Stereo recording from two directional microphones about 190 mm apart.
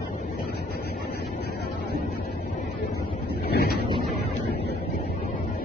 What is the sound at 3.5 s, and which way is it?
Boat, 55° left (ahead or behind).